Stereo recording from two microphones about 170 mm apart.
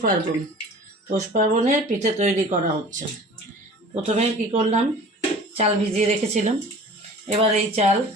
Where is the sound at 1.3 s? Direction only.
45° right (ahead or behind).